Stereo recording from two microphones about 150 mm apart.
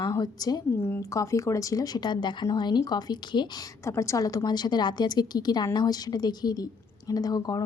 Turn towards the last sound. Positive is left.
turn(degrees=25)  # may be behind; listen again after turning